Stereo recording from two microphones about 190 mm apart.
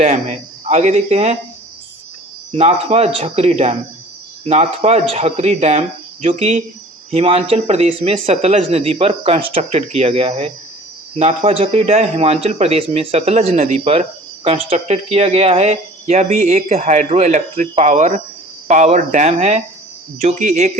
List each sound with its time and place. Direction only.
0.0 s speech: 35° right (ahead or behind)
2.5 s speech: 35° right (ahead or behind)